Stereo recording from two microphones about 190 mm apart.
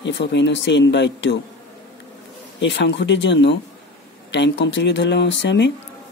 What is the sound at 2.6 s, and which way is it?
Speech, 70° left (ahead or behind).